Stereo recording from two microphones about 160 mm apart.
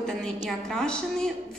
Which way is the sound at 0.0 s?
5° left (ahead or behind).